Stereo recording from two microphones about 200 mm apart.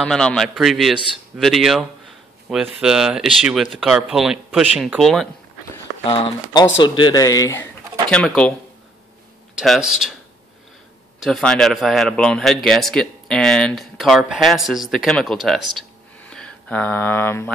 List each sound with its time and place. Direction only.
0.0 s a man's voice: 5° left (ahead or behind)
6.0 s speech: 25° left (ahead or behind)
8.1 s a man's voice: 5° left (ahead or behind)
9.6 s a man's voice: 5° right (ahead or behind)
11.1 s a man's voice: centre (ahead or behind)
16.2 s a sound: 5° left (ahead or behind)